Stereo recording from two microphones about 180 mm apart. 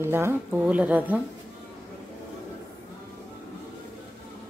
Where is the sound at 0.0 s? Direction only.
15° right (ahead or behind).